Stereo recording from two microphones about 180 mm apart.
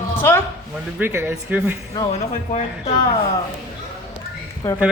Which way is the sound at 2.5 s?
40° left (ahead or behind).